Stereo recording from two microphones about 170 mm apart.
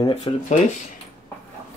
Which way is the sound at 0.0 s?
40° left (ahead or behind).